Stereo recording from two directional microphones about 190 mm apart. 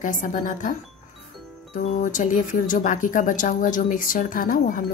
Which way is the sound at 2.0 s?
40° left (ahead or behind).